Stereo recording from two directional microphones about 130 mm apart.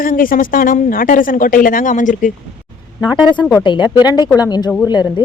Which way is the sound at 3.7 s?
35° left (ahead or behind).